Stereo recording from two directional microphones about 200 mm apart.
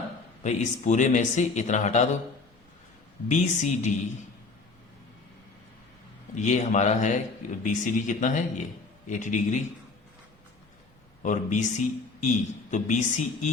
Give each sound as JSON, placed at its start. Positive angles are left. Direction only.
{"t": 0.4, "sound": "a man's voice", "side_deg": 35}
{"t": 3.2, "sound": "a man's voice", "side_deg": 35}
{"t": 6.3, "sound": "a man's voice", "side_deg": 35}
{"t": 11.2, "sound": "a man's voice", "side_deg": 40}